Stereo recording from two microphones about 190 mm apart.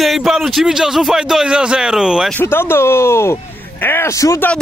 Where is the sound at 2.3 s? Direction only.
10° left (ahead or behind).